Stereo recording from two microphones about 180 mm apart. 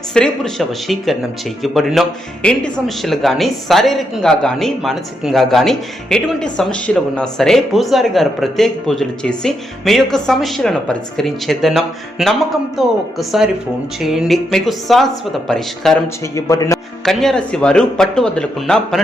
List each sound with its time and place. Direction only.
0.1 s a man's voice: 5° left (ahead or behind)
16.3 s speech: 20° left (ahead or behind)
17.1 s a man's voice: centre (ahead or behind)